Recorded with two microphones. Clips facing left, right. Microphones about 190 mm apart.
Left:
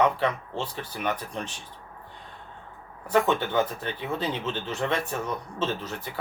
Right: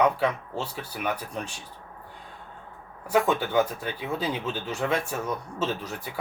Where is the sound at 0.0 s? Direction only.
10° right (ahead or behind).